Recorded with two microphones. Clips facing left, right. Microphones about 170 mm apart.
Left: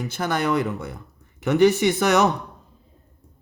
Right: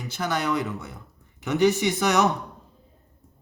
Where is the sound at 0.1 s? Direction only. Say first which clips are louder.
Left 2 dB; 50° left (ahead or behind).